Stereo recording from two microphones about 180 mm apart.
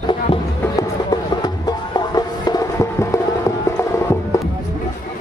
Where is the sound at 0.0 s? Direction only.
25° left (ahead or behind).